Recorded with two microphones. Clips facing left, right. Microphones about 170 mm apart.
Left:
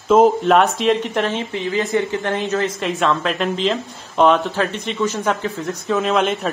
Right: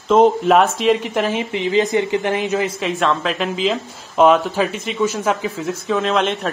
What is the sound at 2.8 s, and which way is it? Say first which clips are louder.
Speech: even; centre (ahead or behind).